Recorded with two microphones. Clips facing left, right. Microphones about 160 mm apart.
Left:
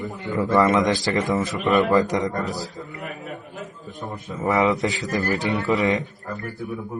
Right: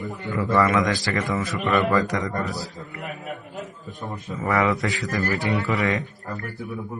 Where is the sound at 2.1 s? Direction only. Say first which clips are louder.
Left 3 dB; 20° left (ahead or behind).